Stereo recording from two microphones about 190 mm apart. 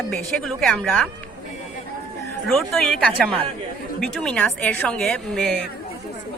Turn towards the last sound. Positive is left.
turn(degrees=0)  # may be behind; listen again after turning